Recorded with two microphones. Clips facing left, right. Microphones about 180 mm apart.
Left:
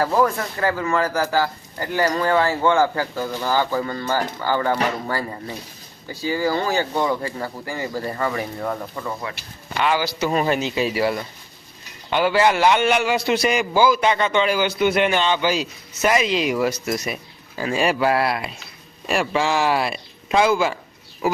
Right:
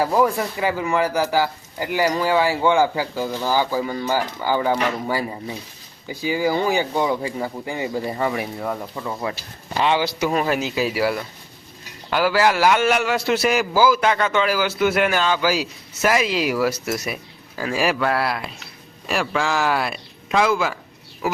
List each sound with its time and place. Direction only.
0.0 s a man's voice: 15° right (ahead or behind)
9.7 s a man's voice: 25° right (ahead or behind)
10.2 s a man's voice: centre (ahead or behind)